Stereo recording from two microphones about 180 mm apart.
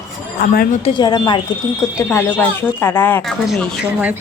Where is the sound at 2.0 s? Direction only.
15° left (ahead or behind).